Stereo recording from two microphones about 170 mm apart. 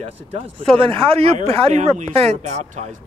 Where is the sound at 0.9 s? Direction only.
35° right (ahead or behind).